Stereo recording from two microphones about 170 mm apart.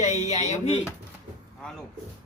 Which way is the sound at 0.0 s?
40° left (ahead or behind).